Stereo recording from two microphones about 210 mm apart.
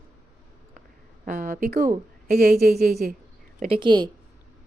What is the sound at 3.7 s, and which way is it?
Speech, 20° right (ahead or behind).